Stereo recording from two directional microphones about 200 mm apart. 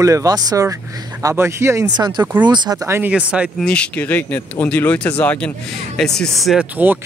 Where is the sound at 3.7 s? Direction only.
5° left (ahead or behind).